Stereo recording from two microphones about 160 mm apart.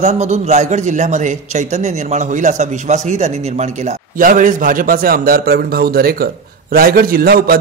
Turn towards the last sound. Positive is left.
turn(degrees=-70)  # may be behind; listen again after turning